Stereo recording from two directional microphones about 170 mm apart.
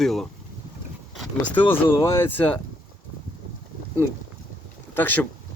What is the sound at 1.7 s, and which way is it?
Speech, 20° left (ahead or behind).